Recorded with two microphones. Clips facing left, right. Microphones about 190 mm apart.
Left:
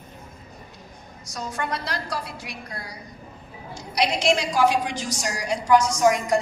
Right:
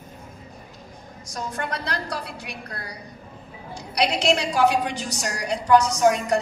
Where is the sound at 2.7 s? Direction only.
60° right (ahead or behind).